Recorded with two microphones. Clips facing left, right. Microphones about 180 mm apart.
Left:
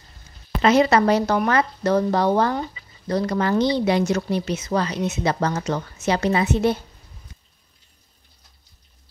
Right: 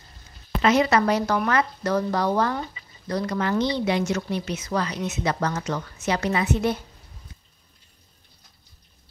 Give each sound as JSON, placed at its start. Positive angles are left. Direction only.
{"t": 0.6, "sound": "a woman's voice", "side_deg": 30}